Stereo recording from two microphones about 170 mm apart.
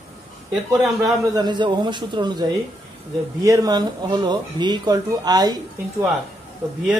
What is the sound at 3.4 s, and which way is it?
Speech, 20° right (ahead or behind).